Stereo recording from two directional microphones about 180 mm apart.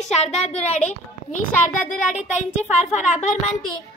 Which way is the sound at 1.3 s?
45° left (ahead or behind).